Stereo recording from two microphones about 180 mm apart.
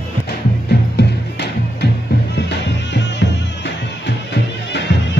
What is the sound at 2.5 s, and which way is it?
Music, 80° left.